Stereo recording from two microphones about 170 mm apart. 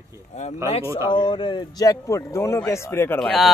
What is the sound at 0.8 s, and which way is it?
Speech, 15° right (ahead or behind).